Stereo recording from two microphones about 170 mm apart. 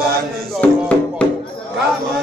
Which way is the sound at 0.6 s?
5° left (ahead or behind).